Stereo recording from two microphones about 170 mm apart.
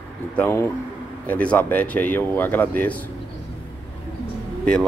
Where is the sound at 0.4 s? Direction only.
15° left (ahead or behind).